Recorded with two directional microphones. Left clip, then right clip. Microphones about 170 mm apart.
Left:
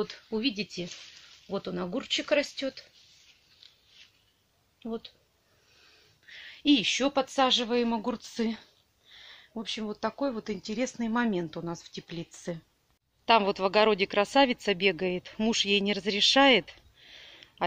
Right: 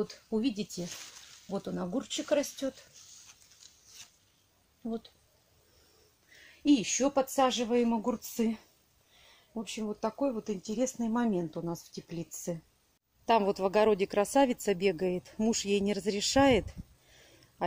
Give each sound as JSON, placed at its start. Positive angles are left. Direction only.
{"t": 0.0, "sound": "speech", "side_deg": -5}
{"t": 1.5, "sound": "speech", "side_deg": 0}
{"t": 4.8, "sound": "speech", "side_deg": 5}
{"t": 6.3, "sound": "speech", "side_deg": -5}
{"t": 9.5, "sound": "speech", "side_deg": 10}
{"t": 10.2, "sound": "speech", "side_deg": 0}